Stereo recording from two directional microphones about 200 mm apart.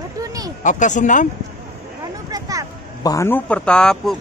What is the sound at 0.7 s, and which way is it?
Speech, 40° left (ahead or behind).